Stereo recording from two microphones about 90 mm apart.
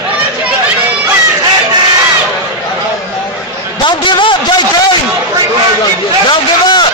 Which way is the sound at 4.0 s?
65° left (ahead or behind).